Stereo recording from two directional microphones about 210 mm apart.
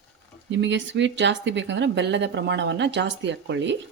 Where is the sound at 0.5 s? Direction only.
60° right (ahead or behind).